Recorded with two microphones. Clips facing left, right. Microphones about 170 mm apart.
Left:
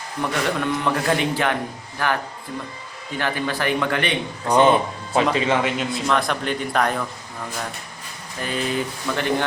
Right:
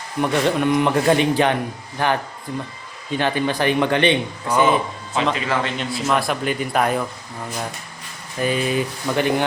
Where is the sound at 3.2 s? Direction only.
20° right (ahead or behind).